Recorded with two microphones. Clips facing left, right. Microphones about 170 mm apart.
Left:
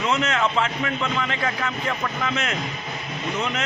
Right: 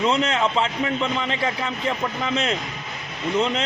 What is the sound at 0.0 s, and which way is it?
Speech, 30° right (ahead or behind).